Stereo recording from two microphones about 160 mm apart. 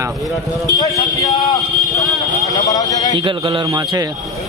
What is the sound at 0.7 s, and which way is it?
Speech, 20° left (ahead or behind).